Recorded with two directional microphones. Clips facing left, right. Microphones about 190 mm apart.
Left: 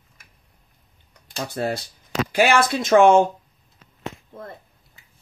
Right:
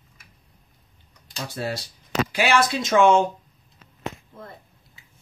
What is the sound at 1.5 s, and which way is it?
Speech, 55° left (ahead or behind).